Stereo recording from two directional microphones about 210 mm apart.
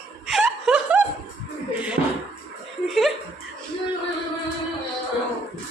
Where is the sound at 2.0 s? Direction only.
45° right (ahead or behind).